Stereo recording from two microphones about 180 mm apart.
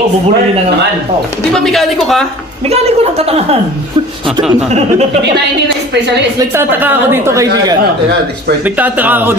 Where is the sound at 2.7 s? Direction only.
35° right (ahead or behind).